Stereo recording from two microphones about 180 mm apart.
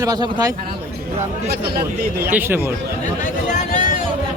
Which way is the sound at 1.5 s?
60° right (ahead or behind).